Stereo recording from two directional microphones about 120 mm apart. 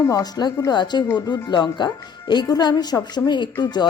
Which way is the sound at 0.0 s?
30° left (ahead or behind).